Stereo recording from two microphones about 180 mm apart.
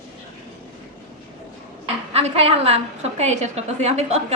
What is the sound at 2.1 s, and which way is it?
A woman's voice, 35° right (ahead or behind).